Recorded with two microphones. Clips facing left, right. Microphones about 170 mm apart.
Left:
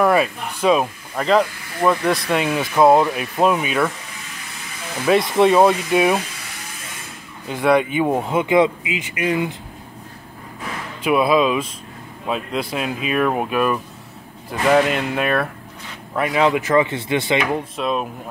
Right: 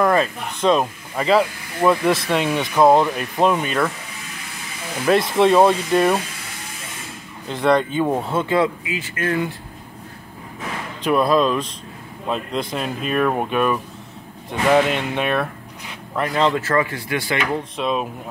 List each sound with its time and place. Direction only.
0.0 s speech: 10° left (ahead or behind)
1.1 s speech: 5° right (ahead or behind)
5.0 s speech: centre (ahead or behind)
7.4 s speech: 5° left (ahead or behind)
11.0 s speech: 5° left (ahead or behind); by 17.4 s 25° left (ahead or behind)
17.7 s speech: centre (ahead or behind)